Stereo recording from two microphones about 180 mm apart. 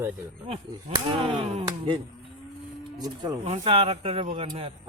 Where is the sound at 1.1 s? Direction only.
30° right (ahead or behind).